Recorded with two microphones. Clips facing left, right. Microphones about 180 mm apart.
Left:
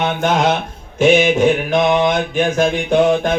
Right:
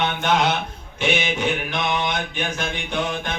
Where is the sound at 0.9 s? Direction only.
45° left (ahead or behind).